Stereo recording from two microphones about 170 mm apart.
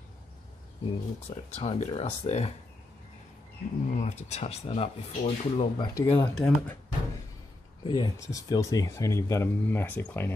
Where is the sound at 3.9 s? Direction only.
40° left (ahead or behind).